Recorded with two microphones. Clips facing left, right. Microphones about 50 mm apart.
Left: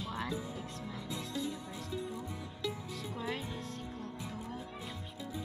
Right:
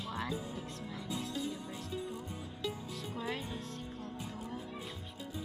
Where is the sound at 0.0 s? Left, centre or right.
Centre.